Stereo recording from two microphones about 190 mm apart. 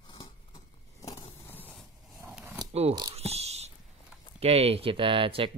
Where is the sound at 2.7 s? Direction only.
35° right (ahead or behind).